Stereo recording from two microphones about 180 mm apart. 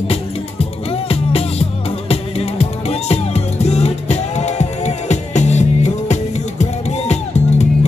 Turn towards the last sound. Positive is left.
turn(degrees=40)  # may be behind; listen again after turning